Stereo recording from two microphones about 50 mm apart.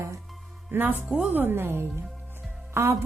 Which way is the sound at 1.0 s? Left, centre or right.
Centre.